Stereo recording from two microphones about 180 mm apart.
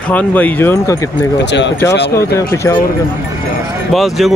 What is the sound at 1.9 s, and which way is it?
Speech, 65° left (ahead or behind).